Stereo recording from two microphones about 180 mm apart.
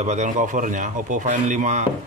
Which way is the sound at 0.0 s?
40° right (ahead or behind).